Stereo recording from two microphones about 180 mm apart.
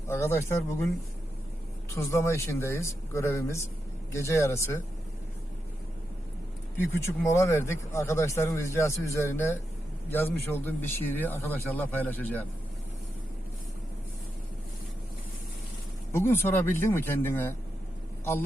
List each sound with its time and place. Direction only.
0.1 s speech: 15° left (ahead or behind)
2.0 s speech: 15° left (ahead or behind)
6.9 s speech: 15° left (ahead or behind)
16.1 s speech: 15° left (ahead or behind)